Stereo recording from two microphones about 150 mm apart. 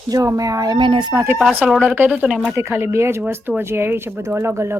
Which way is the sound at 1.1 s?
15° right (ahead or behind).